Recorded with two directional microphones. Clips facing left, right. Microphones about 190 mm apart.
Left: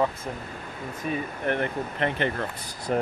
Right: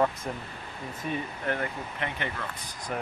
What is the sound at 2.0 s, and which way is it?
Speech, 35° left (ahead or behind).